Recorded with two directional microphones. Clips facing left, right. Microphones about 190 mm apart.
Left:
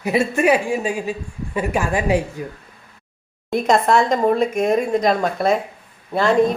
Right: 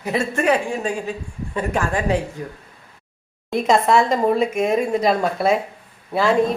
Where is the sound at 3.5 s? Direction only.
Centre (ahead or behind).